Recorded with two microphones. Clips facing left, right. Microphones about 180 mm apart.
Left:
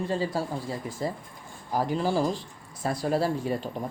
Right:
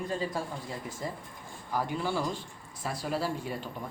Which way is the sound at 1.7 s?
40° left (ahead or behind).